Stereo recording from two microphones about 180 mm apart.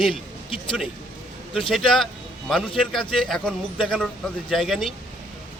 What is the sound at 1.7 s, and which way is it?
A man's voice, centre (ahead or behind).